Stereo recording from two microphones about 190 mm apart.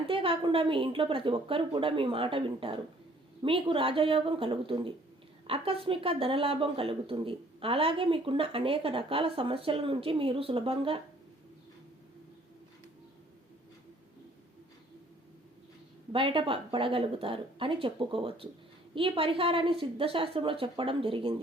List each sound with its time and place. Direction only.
0.1 s speech: 30° right (ahead or behind)
16.1 s speech: 25° right (ahead or behind)